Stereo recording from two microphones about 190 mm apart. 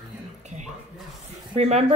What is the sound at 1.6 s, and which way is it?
Speech, 35° right (ahead or behind).